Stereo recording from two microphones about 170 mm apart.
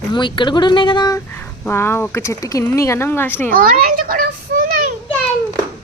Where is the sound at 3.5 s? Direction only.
55° right (ahead or behind).